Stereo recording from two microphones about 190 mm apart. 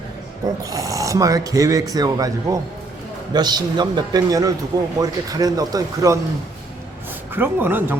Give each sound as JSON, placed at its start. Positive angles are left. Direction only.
{"t": 0.6, "sound": "a man's voice", "side_deg": -20}
{"t": 7.3, "sound": "speech", "side_deg": -10}